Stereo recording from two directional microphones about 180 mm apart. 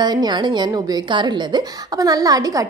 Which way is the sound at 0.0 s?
25° right (ahead or behind).